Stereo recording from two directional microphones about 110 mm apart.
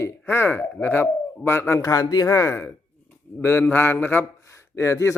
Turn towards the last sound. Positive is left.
turn(degrees=30)  # may be behind; listen again after turning